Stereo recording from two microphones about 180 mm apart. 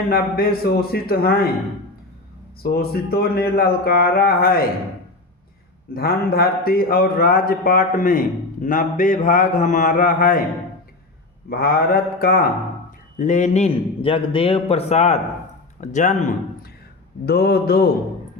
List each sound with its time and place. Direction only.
0.1 s speech: 55° left (ahead or behind)
2.6 s speech: 60° left (ahead or behind)
5.9 s a man's voice: 55° left (ahead or behind)
11.4 s speech: 55° left (ahead or behind)
13.1 s a man's voice: 45° left (ahead or behind)
17.2 s speech: 60° left (ahead or behind)